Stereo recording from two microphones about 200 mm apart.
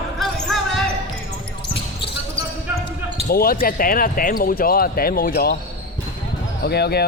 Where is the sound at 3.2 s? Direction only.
45° left (ahead or behind).